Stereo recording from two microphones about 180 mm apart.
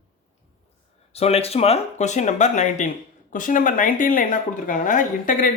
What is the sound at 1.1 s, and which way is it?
Speech, 35° left (ahead or behind).